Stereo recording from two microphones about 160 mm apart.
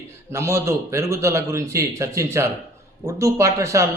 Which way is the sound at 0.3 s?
15° right (ahead or behind).